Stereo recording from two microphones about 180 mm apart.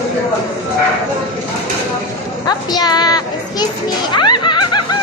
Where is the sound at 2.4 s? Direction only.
20° left (ahead or behind).